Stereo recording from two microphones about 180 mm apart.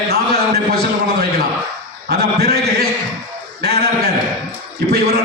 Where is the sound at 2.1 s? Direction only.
60° right (ahead or behind).